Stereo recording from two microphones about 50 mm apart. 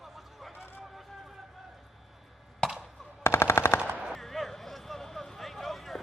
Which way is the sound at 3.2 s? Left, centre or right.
Left.